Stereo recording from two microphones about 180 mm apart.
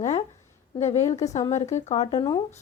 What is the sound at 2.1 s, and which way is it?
Speech, 20° left (ahead or behind).